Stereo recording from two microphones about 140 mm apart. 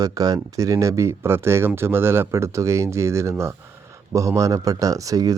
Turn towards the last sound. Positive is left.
turn(degrees=-25)  # may be behind; listen again after turning